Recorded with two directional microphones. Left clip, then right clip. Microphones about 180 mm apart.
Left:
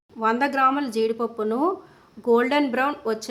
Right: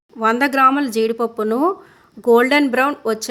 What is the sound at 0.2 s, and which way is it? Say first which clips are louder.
Speech: right 6 dB; 35° right (ahead or behind).